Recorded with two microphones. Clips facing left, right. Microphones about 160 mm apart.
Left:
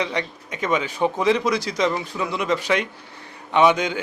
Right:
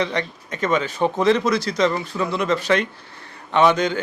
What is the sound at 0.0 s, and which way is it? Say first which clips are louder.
Speech: right 2 dB; 10° left (ahead or behind).